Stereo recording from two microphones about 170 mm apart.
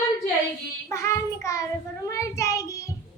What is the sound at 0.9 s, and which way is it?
Child singing, 15° left (ahead or behind).